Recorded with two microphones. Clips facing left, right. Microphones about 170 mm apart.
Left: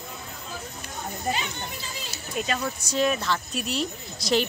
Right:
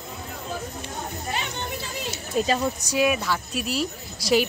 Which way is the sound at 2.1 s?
30° right (ahead or behind).